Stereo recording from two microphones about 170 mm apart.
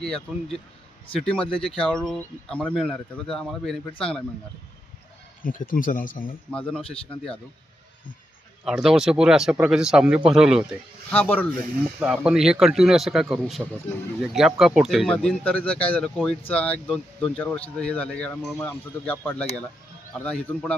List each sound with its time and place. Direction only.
0.0 s speech: centre (ahead or behind)
5.4 s speech: 55° left (ahead or behind)
6.5 s speech: 5° left (ahead or behind)
8.6 s speech: 5° right (ahead or behind)
11.1 s speech: 10° left (ahead or behind)
11.9 s a man's voice: 5° right (ahead or behind)